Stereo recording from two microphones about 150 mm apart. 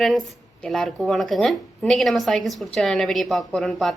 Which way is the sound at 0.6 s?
Centre (ahead or behind).